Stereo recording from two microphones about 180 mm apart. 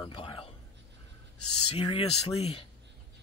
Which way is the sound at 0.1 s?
30° left (ahead or behind).